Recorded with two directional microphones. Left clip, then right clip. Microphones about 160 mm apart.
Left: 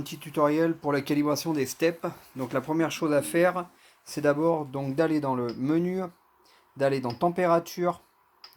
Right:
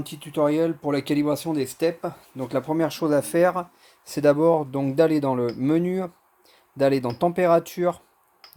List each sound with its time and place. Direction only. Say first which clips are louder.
0.2 s speech: right 2 dB; 30° right (ahead or behind); by 7.9 s 50° right (ahead or behind)